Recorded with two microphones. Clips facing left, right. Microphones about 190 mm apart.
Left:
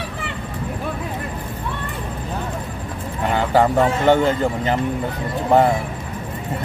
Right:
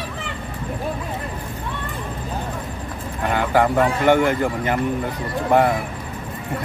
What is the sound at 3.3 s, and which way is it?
Speech, 25° left (ahead or behind).